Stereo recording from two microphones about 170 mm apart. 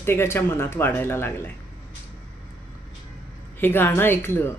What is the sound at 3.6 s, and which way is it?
Speech, 10° left (ahead or behind).